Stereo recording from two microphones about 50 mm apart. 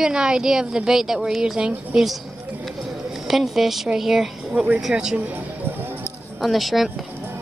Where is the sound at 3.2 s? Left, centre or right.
Centre.